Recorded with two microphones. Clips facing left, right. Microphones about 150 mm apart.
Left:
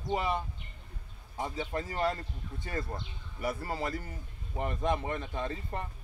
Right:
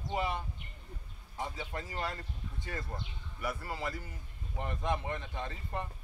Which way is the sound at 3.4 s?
40° left (ahead or behind).